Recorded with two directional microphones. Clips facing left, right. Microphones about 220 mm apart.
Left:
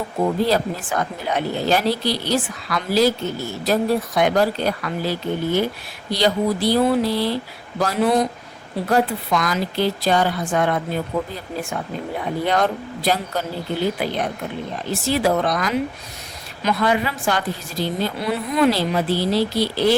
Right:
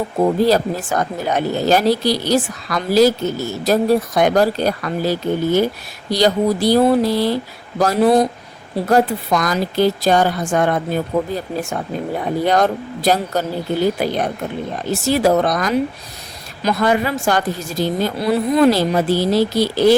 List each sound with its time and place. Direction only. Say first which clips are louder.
0.2 s a woman's voice: right 4 dB; 40° right (ahead or behind)
12.5 s a woman's voice: right 4 dB; 40° right (ahead or behind)